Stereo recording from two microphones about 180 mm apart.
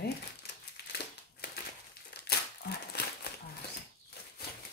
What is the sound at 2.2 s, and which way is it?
Crumpling, 65° left (ahead or behind).